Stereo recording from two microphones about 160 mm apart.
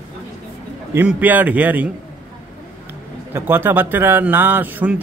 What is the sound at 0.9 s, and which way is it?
Speech, 10° right (ahead or behind).